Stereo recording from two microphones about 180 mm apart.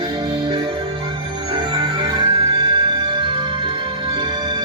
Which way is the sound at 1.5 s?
25° right (ahead or behind).